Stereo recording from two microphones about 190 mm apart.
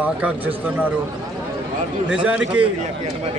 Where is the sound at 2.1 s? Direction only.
5° right (ahead or behind).